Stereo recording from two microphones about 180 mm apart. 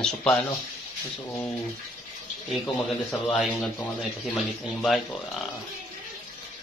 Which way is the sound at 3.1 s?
10° left (ahead or behind).